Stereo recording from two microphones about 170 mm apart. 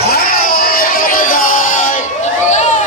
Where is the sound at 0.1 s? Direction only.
60° left (ahead or behind).